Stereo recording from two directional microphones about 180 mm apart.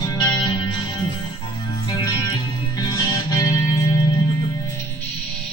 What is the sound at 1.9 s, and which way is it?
Music, 20° left (ahead or behind).